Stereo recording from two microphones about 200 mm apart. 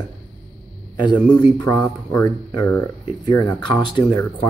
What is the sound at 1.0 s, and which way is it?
Speech, 20° left (ahead or behind).